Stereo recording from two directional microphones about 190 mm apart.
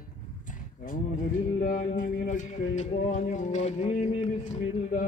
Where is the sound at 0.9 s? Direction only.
45° left (ahead or behind).